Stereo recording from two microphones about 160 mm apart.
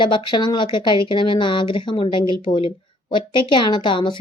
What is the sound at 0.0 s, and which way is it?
Speech, 30° left (ahead or behind).